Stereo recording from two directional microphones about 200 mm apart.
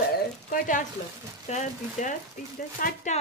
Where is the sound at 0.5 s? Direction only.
45° left (ahead or behind).